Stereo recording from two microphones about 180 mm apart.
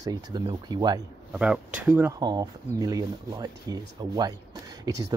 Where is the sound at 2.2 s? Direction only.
20° right (ahead or behind).